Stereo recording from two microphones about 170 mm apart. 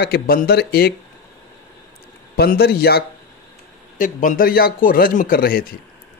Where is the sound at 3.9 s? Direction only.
50° left (ahead or behind).